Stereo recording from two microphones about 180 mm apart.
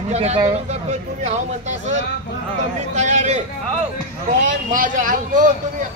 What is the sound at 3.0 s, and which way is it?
Speech, 40° right (ahead or behind).